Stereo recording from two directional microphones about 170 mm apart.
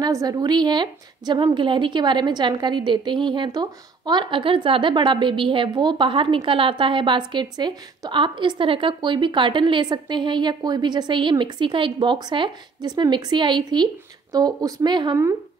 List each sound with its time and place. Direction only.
0.0 s a woman's voice: 20° right (ahead or behind)